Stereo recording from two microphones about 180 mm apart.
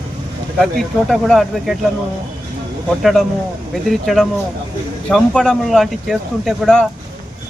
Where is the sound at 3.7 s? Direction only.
Centre (ahead or behind).